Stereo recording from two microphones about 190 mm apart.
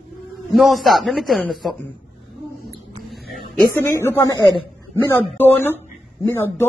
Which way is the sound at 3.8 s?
10° left (ahead or behind).